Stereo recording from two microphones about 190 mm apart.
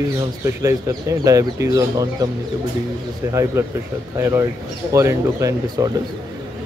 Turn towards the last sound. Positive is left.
turn(degrees=-20)  # may be behind; listen again after turning